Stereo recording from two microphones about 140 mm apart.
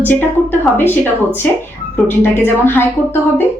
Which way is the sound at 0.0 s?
15° left (ahead or behind).